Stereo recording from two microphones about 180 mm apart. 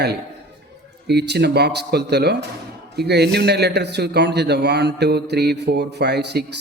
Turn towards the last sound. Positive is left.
turn(degrees=-70)  # may be behind; listen again after turning